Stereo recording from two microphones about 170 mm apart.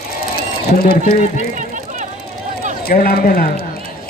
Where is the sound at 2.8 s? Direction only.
60° left (ahead or behind).